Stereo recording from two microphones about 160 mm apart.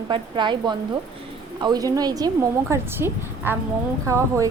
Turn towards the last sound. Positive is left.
turn(degrees=-20)  # may be behind; listen again after turning